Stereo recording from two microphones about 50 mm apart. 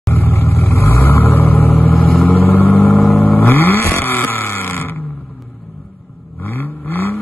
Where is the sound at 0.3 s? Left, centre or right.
Left.